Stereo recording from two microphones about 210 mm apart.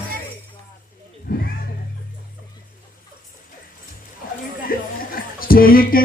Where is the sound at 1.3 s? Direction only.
45° left (ahead or behind).